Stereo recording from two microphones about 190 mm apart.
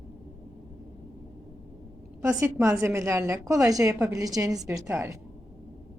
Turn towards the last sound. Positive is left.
turn(degrees=-15)  # may be behind; listen again after turning